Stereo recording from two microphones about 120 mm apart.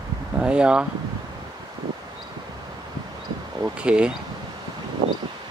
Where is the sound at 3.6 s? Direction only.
10° right (ahead or behind).